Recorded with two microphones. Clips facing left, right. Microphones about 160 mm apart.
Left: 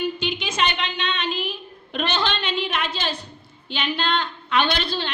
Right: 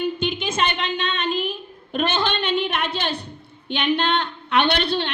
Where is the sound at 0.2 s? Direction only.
50° right (ahead or behind).